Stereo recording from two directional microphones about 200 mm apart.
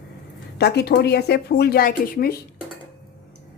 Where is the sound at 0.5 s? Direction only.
55° left (ahead or behind).